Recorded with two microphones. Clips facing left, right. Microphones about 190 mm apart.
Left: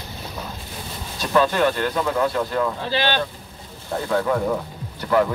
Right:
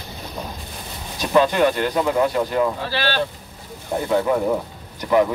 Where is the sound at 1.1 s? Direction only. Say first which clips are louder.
Right 2 dB; 15° right (ahead or behind).